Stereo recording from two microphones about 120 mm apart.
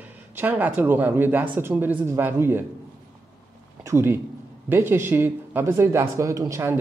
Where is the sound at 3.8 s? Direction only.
20° right (ahead or behind).